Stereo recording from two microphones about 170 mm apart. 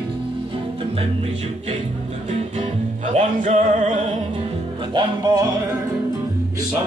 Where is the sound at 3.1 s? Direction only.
45° right (ahead or behind).